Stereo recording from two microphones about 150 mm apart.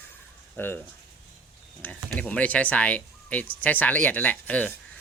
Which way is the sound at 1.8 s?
10° left (ahead or behind).